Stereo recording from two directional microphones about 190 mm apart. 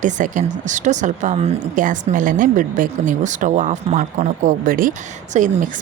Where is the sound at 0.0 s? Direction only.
40° right (ahead or behind).